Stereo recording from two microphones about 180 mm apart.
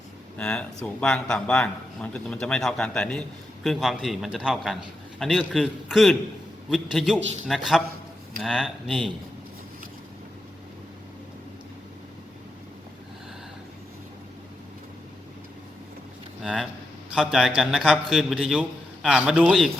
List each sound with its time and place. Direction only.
0.3 s a man's voice: 5° left (ahead or behind)
16.4 s a man's voice: centre (ahead or behind)